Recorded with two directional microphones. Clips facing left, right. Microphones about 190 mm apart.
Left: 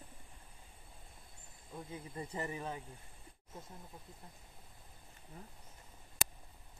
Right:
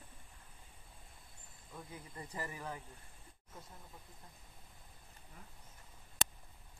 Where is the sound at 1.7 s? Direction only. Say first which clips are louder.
Left 5 dB; 20° left (ahead or behind).